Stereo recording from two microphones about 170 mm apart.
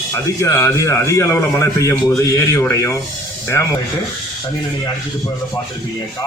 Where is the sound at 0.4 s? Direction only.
15° left (ahead or behind).